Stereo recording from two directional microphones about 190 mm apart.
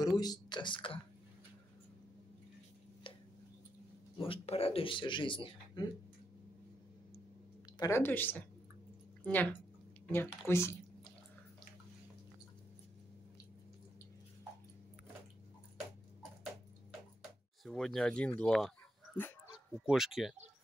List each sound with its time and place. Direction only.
0.0 s speech: 20° left (ahead or behind)
3.1 s a sound: 30° left (ahead or behind)
4.2 s speech: 30° left (ahead or behind)
7.8 s speech: 10° left (ahead or behind)
17.6 s speech: centre (ahead or behind)
19.9 s speech: centre (ahead or behind)